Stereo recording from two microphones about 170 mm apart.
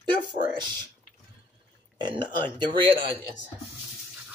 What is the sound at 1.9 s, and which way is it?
Speech, 25° right (ahead or behind).